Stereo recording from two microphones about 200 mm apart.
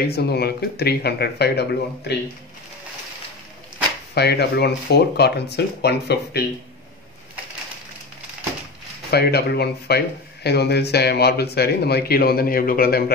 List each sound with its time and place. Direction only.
0.0 s speech: 50° left (ahead or behind)
4.1 s speech: 55° left (ahead or behind)
9.1 s speech: 55° left (ahead or behind)